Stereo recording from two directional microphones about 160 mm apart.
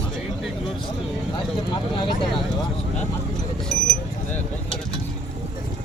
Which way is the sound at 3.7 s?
Centre (ahead or behind).